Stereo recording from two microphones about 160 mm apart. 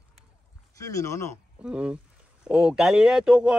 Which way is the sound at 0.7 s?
20° left (ahead or behind).